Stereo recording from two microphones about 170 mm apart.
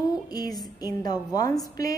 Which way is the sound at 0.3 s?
25° left (ahead or behind).